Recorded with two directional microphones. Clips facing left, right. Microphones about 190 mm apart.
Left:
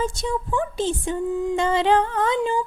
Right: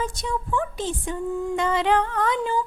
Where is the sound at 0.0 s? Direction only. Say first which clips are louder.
Left 3 dB; 25° left (ahead or behind).